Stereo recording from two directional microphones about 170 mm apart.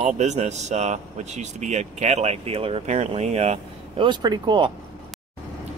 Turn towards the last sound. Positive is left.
turn(degrees=-25)  # may be behind; listen again after turning